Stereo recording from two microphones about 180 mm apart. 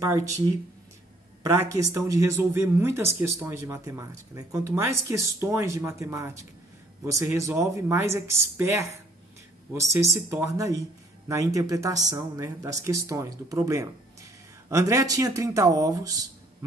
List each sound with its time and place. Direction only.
0.0 s speech: 15° right (ahead or behind)
1.4 s speech: 15° right (ahead or behind)